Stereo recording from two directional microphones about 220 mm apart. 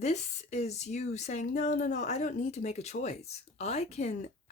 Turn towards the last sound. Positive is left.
turn(degrees=30)  # may be behind; listen again after turning